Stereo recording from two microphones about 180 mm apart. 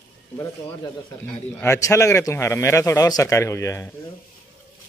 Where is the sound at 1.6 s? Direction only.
15° left (ahead or behind).